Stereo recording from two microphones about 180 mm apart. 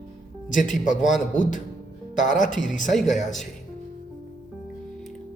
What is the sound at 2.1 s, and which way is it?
Speech, 45° left (ahead or behind).